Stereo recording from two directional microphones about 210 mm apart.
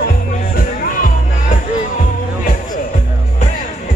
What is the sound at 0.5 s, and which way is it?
Music, 40° left (ahead or behind).